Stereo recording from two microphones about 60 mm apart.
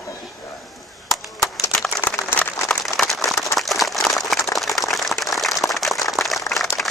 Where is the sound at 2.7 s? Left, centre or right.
Centre.